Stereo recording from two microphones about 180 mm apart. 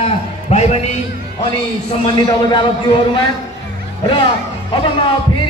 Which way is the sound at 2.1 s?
25° left (ahead or behind).